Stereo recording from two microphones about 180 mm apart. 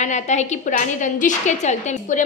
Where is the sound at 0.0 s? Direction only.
40° left (ahead or behind).